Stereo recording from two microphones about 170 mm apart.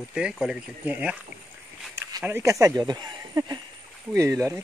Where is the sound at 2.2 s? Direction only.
15° right (ahead or behind).